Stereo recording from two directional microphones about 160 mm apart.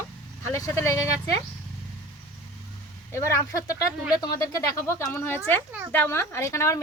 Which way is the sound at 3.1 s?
20° left (ahead or behind).